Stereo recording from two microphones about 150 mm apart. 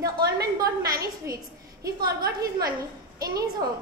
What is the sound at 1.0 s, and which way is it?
A woman's voice, 20° right (ahead or behind).